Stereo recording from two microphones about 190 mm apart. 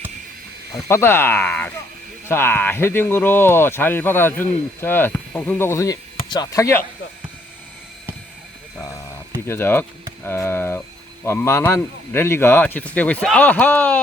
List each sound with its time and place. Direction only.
0.7 s speech: 15° left (ahead or behind)
9.5 s speech: 10° left (ahead or behind)